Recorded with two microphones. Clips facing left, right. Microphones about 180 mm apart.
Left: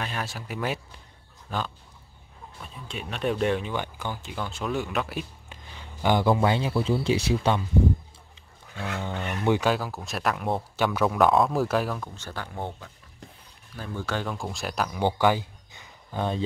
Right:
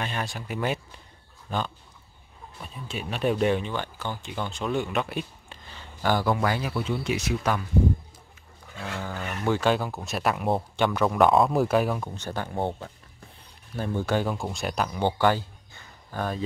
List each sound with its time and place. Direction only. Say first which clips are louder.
0.0 s speech: right 1 dB; centre (ahead or behind)
3.7 s speech: even; 15° left (ahead or behind)
4.2 s speech: right 1 dB; centre (ahead or behind)
5.7 s a man's voice: left 1 dB; 15° left (ahead or behind)
8.9 s a man's voice: left 2 dB; 25° left (ahead or behind)
9.7 s speech: right 1 dB; centre (ahead or behind)
12.0 s speech: right 4 dB; 20° right (ahead or behind)
13.7 s speech: right 5 dB; 15° right (ahead or behind); by 15.0 s centre (ahead or behind)
15.0 s a sound: left 1 dB; 15° left (ahead or behind)